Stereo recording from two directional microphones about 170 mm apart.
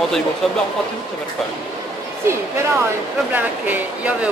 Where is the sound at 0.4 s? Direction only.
Centre (ahead or behind).